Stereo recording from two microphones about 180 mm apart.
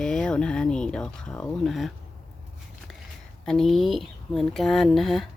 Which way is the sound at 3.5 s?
Centre (ahead or behind).